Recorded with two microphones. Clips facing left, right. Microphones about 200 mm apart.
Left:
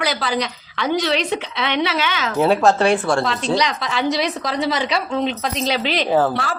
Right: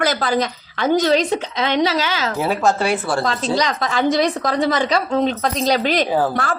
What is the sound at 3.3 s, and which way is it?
A woman's voice, 45° right (ahead or behind).